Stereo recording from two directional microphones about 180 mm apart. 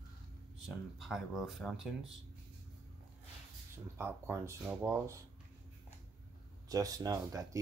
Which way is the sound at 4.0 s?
15° right (ahead or behind).